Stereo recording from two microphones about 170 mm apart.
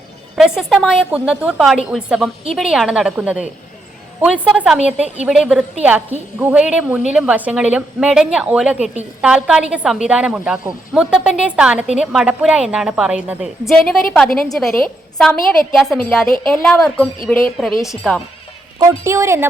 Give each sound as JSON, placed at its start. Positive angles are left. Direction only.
{"t": 0.3, "sound": "a woman's voice", "side_deg": 0}
{"t": 18.8, "sound": "speech", "side_deg": -15}